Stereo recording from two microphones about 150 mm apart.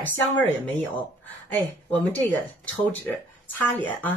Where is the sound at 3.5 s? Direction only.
10° left (ahead or behind).